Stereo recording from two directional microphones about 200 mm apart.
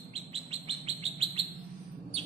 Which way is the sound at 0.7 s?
25° right (ahead or behind).